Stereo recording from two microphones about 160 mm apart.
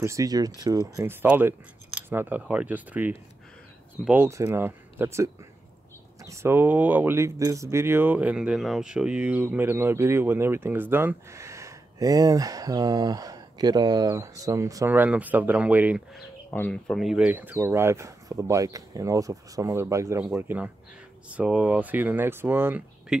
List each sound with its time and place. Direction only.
0.0 s speech: 20° right (ahead or behind)
16.4 s speech: 15° left (ahead or behind); by 23.1 s 10° right (ahead or behind)